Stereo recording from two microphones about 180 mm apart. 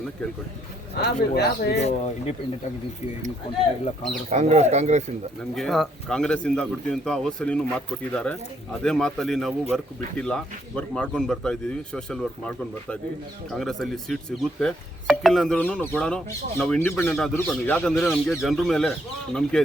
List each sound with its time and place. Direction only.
0.9 s speech: 65° left (ahead or behind)
1.8 s speech: 35° left (ahead or behind)
4.3 s speech: 40° right (ahead or behind)
5.5 s speech: centre (ahead or behind)